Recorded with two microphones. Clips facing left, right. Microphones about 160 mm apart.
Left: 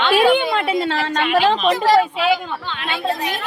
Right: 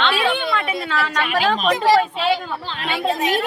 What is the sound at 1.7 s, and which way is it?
A man's voice, 25° right (ahead or behind).